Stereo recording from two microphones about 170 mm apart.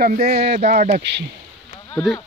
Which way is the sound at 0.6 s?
40° right (ahead or behind).